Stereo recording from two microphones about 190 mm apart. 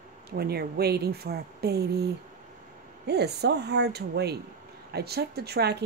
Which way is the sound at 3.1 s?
60° right (ahead or behind).